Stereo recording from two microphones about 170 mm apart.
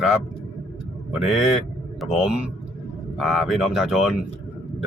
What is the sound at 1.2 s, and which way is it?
A man's voice, centre (ahead or behind).